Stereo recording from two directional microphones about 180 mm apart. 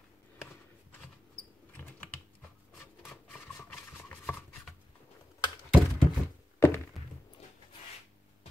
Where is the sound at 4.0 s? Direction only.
10° left (ahead or behind).